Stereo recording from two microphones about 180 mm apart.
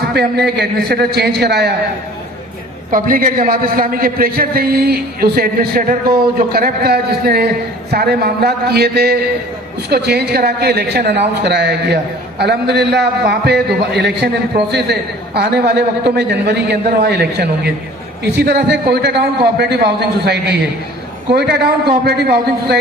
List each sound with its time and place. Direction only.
0.1 s a man's voice: 65° right (ahead or behind)
2.9 s a man's voice: 50° right (ahead or behind)
15.4 s a man's voice: 65° right (ahead or behind)